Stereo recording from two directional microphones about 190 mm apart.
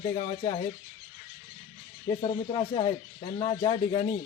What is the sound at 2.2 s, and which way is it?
Speech, 25° left (ahead or behind).